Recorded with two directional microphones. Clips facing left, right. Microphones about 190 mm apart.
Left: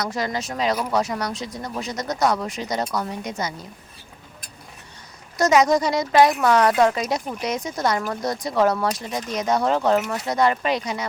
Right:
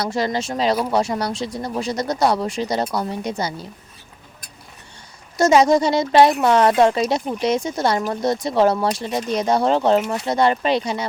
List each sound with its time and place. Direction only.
0.0 s speech: 30° right (ahead or behind)
5.4 s speech: 25° right (ahead or behind)